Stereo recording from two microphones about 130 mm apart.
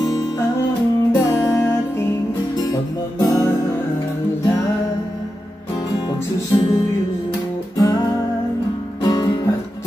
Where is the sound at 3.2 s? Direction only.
25° left (ahead or behind).